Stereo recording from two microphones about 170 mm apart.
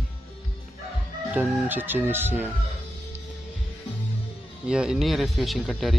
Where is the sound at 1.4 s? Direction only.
10° right (ahead or behind).